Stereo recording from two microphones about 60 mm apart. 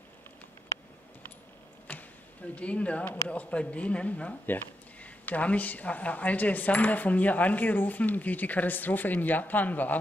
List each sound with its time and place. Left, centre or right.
1.9 s speech: left
4.5 s speech: left